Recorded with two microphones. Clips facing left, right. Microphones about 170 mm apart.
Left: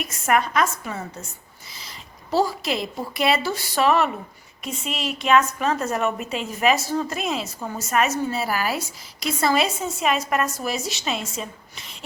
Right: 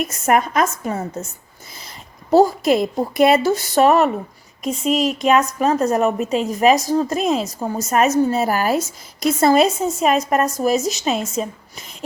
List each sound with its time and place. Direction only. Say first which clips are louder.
0.0 s a woman's voice: right 4 dB; 45° right (ahead or behind)
2.3 s a woman's voice: right 9 dB; 45° right (ahead or behind)